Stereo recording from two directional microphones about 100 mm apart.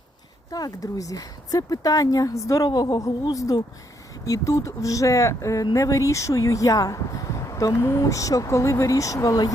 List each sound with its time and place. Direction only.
0.5 s speech: 35° left (ahead or behind)
2.6 s speech: 45° left (ahead or behind)